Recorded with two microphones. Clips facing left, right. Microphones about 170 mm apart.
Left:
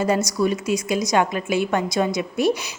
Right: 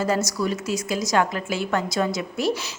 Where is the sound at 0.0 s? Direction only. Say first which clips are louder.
Left 3 dB; 15° left (ahead or behind).